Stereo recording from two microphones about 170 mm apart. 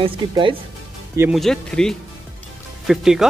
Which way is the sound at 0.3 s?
30° right (ahead or behind).